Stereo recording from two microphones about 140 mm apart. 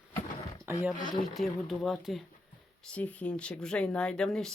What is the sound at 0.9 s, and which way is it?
Speech, 75° left (ahead or behind).